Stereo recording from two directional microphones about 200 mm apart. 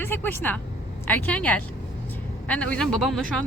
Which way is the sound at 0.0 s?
10° left (ahead or behind).